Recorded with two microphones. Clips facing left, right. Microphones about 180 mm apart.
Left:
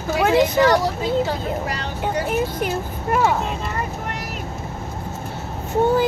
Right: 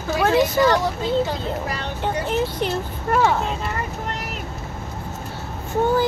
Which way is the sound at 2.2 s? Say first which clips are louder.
Even; 10° left (ahead or behind).